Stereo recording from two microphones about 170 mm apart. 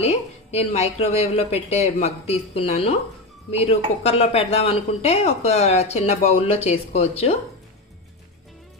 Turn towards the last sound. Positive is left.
turn(degrees=40)  # may be behind; listen again after turning